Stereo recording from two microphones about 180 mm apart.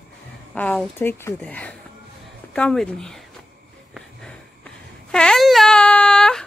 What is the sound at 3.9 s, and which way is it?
Sniff, 5° left (ahead or behind).